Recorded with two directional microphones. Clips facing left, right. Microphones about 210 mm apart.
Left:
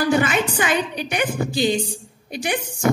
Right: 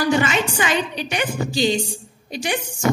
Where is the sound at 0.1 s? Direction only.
55° left (ahead or behind).